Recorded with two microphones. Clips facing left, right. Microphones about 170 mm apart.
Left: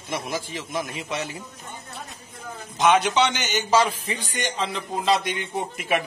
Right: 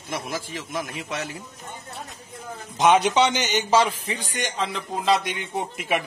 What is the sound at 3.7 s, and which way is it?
Speech, 5° left (ahead or behind).